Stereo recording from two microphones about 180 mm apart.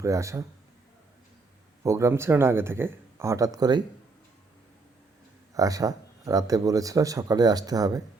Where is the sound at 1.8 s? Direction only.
15° right (ahead or behind).